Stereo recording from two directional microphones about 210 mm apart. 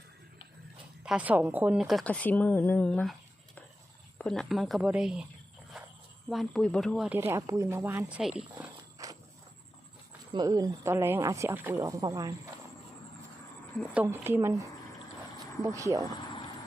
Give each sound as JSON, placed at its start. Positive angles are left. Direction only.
{"t": 1.0, "sound": "speech", "side_deg": -5}
{"t": 6.2, "sound": "speech", "side_deg": 0}
{"t": 9.0, "sound": "walk", "side_deg": -15}
{"t": 10.3, "sound": "speech", "side_deg": -15}
{"t": 13.7, "sound": "speech", "side_deg": -5}
{"t": 15.6, "sound": "speech", "side_deg": -15}